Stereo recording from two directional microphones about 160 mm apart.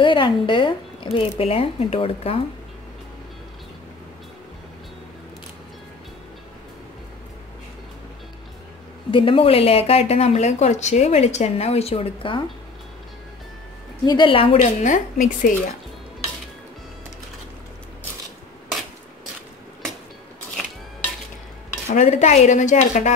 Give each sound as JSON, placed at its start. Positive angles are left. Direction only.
{"t": 0.0, "sound": "speech", "side_deg": 30}
{"t": 9.1, "sound": "speech", "side_deg": 35}
{"t": 14.0, "sound": "a woman's voice", "side_deg": 30}
{"t": 21.8, "sound": "a woman's voice", "side_deg": 45}